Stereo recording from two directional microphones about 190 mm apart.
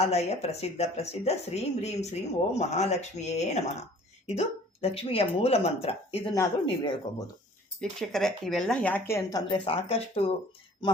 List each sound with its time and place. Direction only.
0.0 s a woman's voice: 35° left (ahead or behind)
6.3 s speech: 15° left (ahead or behind)
7.8 s speech: centre (ahead or behind); by 10.3 s 35° left (ahead or behind)